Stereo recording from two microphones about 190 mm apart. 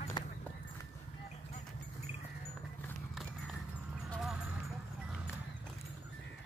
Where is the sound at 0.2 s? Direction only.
25° left (ahead or behind).